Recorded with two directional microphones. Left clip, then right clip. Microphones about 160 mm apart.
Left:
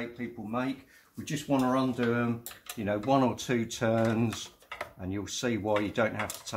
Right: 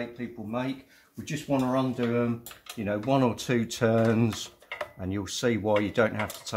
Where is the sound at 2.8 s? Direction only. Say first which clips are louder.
Right 1 dB; 25° right (ahead or behind); by 6.5 s 45° right (ahead or behind).